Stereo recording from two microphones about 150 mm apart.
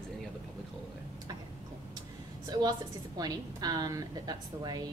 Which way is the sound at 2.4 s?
25° right (ahead or behind).